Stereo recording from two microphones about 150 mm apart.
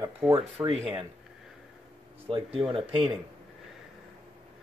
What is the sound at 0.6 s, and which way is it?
Speech, 15° right (ahead or behind).